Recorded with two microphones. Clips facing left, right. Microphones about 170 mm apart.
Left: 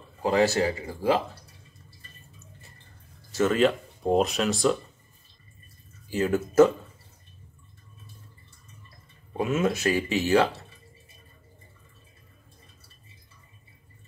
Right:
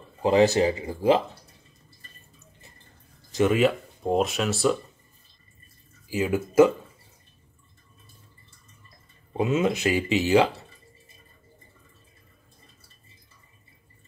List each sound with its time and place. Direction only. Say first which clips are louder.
0.2 s speech: right 3 dB; 20° right (ahead or behind)
3.3 s speech: right 1 dB; 15° right (ahead or behind)
6.0 s speech: even; 10° right (ahead or behind)
9.4 s speech: right 2 dB; 20° right (ahead or behind)